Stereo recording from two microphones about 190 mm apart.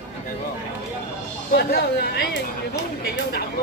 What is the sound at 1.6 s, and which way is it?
Speech, 55° left (ahead or behind).